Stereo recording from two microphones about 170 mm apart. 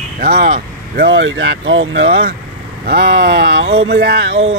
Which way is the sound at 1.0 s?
90° right.